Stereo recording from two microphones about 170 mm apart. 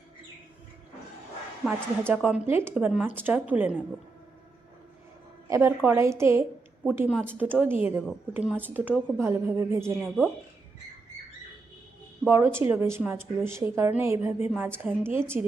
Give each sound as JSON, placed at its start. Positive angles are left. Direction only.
{"t": 1.6, "sound": "speech", "side_deg": -10}
{"t": 5.5, "sound": "speech", "side_deg": -15}
{"t": 7.1, "sound": "speech", "side_deg": -5}
{"t": 12.3, "sound": "speech", "side_deg": -15}